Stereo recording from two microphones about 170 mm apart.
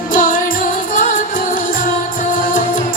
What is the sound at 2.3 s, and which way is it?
Music, 50° left (ahead or behind).